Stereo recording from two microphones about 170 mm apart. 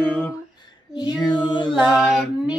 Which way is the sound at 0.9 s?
25° left (ahead or behind).